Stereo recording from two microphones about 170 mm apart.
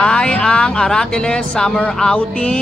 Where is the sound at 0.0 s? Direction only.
5° left (ahead or behind).